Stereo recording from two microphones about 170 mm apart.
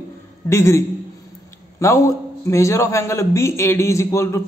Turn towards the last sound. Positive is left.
turn(degrees=15)  # may be behind; listen again after turning